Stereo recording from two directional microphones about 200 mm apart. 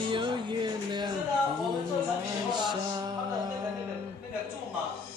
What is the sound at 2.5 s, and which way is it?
Music, 20° right (ahead or behind).